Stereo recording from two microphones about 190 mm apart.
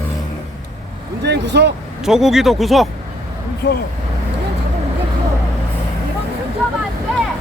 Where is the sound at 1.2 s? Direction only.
65° right (ahead or behind).